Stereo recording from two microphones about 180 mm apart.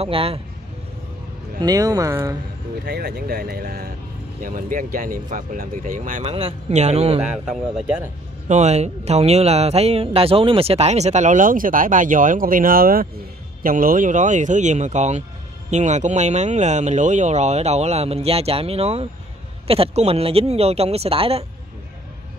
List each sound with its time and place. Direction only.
0.0 s speech: 30° right (ahead or behind)
1.6 s speech: 20° right (ahead or behind)
2.8 s speech: 65° right (ahead or behind); by 6.2 s 50° right (ahead or behind)
6.2 s speech: 35° right (ahead or behind)
7.2 s a man's voice: 5° right (ahead or behind)
8.5 s speech: 40° right (ahead or behind)